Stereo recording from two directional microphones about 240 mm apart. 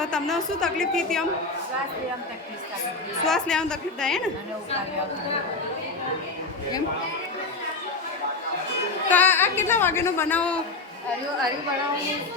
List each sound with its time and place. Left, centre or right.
0.0 s a woman's voice: centre
3.2 s a woman's voice: centre
9.0 s a woman's voice: centre